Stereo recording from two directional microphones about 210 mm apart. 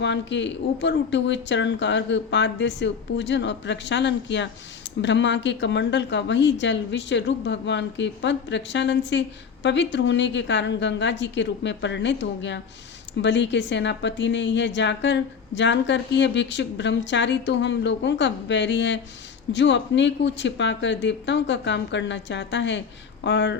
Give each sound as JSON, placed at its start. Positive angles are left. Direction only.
{"t": 0.0, "sound": "a woman's voice", "side_deg": 60}